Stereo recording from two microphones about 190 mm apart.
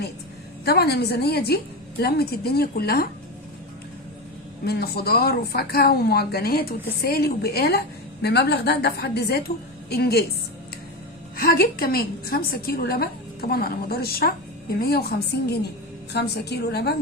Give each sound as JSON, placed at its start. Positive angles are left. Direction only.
{"t": 0.6, "sound": "speech", "side_deg": 55}
{"t": 4.6, "sound": "speech", "side_deg": 55}
{"t": 11.3, "sound": "a woman's voice", "side_deg": 50}